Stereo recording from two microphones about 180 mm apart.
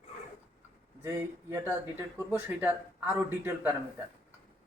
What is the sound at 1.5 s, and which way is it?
Speech, 15° right (ahead or behind).